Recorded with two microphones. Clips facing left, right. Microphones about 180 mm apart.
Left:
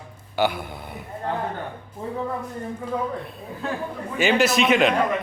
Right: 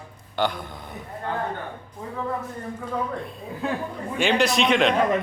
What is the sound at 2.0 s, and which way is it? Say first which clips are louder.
Speech: left 5 dB; 25° left (ahead or behind).